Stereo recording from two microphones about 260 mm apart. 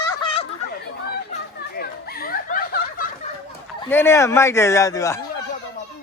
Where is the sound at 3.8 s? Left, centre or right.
Centre.